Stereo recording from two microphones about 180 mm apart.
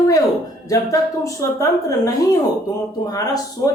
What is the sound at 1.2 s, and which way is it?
Speech, 20° left (ahead or behind).